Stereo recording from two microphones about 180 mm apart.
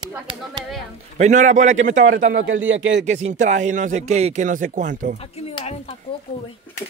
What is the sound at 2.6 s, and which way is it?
Speech, 90° right.